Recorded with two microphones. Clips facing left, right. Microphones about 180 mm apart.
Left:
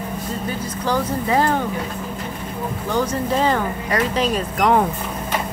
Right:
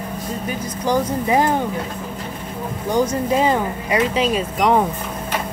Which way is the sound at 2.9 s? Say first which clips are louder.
Right 3 dB; 10° right (ahead or behind).